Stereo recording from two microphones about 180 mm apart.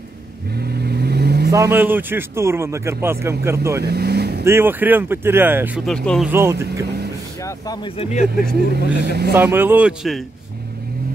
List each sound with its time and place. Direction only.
0.6 s vehicle: 60° right (ahead or behind)
1.5 s a man's voice: 15° right (ahead or behind)
3.8 s vehicle: 65° right (ahead or behind)
4.5 s a man's voice: 10° right (ahead or behind)
6.0 s speech: centre (ahead or behind)
6.3 s a man's voice: 15° right (ahead or behind)
6.7 s speech: 65° right (ahead or behind)
7.4 s speech: 20° left (ahead or behind)
8.0 s speech: 40° left (ahead or behind)
8.5 s speech: 60° right (ahead or behind)
9.4 s a man's voice: 10° right (ahead or behind)